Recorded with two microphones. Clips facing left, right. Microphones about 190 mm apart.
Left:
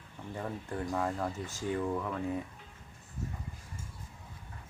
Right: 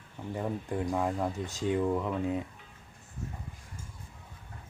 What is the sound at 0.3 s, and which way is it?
Speech, 15° right (ahead or behind).